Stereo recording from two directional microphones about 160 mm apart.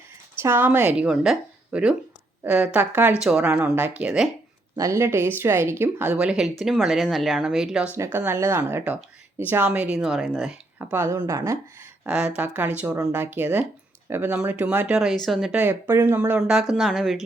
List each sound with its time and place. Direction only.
0.3 s speech: 15° right (ahead or behind)
4.8 s a woman's voice: 20° right (ahead or behind)
7.9 s speech: 15° right (ahead or behind)
10.8 s speech: 15° right (ahead or behind)
12.0 s a woman's voice: 5° right (ahead or behind)
15.6 s a woman's voice: 15° right (ahead or behind)